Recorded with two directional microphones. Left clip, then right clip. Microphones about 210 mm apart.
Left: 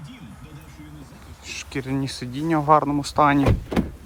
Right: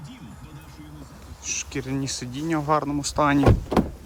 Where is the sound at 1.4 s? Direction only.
15° right (ahead or behind).